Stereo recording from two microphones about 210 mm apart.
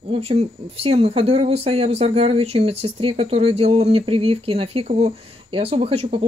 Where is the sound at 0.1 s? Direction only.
30° right (ahead or behind).